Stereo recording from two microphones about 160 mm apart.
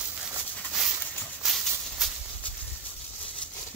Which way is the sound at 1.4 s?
Centre (ahead or behind).